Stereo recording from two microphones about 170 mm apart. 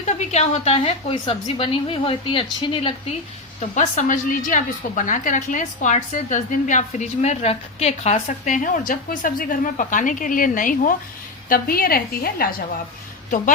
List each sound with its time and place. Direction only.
0.1 s a woman's voice: 40° left (ahead or behind)
3.6 s a woman's voice: 45° left (ahead or behind)